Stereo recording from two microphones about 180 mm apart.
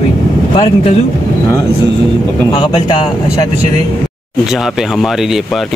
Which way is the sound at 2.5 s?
30° left (ahead or behind).